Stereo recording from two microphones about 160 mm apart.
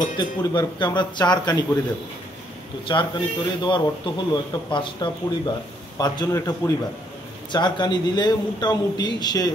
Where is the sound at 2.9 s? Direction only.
30° left (ahead or behind).